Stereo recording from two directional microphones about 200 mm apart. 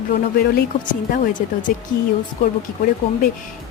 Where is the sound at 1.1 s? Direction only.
40° left (ahead or behind).